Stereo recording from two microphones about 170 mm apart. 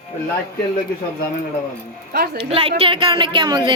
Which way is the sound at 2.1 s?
65° right (ahead or behind).